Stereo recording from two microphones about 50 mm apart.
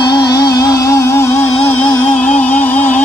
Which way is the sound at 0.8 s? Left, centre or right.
Left.